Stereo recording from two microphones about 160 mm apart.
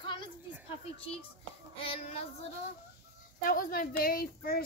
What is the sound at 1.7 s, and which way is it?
Child singing, 35° left (ahead or behind).